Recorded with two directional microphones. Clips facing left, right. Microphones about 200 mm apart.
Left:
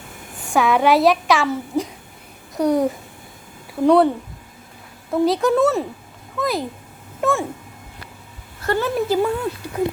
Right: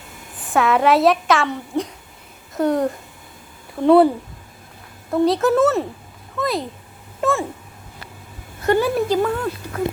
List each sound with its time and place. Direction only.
0.4 s a woman's voice: centre (ahead or behind)
5.1 s a woman's voice: centre (ahead or behind)
8.6 s speech: 15° right (ahead or behind)
9.0 s speech: 10° left (ahead or behind)